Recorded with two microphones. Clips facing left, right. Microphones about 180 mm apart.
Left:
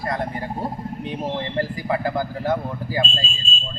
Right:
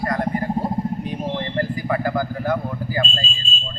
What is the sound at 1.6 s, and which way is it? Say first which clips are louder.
Speech: right 1 dB; 25° left (ahead or behind).